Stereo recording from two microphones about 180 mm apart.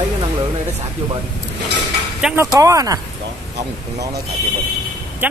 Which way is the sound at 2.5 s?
20° right (ahead or behind).